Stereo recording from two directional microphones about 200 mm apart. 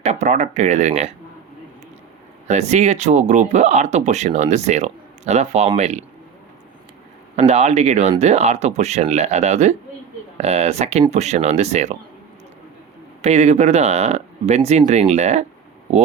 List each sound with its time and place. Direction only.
0.0 s speech: 35° right (ahead or behind)
2.5 s speech: 35° right (ahead or behind)
7.3 s speech: 35° right (ahead or behind)
13.2 s speech: 35° right (ahead or behind)